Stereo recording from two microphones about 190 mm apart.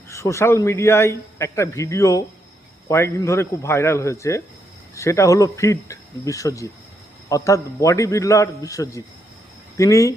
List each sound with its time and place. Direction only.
0.1 s a man's voice: 15° left (ahead or behind)